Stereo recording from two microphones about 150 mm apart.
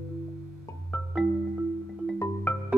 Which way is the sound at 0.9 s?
Centre (ahead or behind).